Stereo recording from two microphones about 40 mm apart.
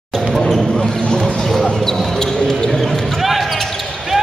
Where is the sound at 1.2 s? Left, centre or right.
Centre.